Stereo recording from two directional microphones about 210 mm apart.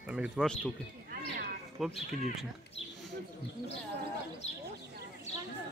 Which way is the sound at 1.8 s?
Centre (ahead or behind).